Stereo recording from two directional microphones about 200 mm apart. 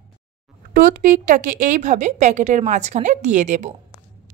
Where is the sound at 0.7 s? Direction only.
40° right (ahead or behind).